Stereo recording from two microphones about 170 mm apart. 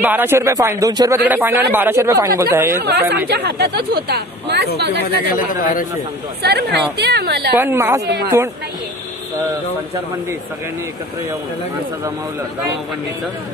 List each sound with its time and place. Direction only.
0.0 s a man's voice: 10° right (ahead or behind)
2.8 s speech: 65° right (ahead or behind)
5.0 s a man's voice: 55° left (ahead or behind)
6.4 s speech: 75° right (ahead or behind)
7.5 s a man's voice: 15° right (ahead or behind)